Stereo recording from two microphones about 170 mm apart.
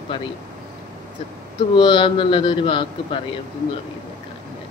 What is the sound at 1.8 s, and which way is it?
Speech, 30° left (ahead or behind).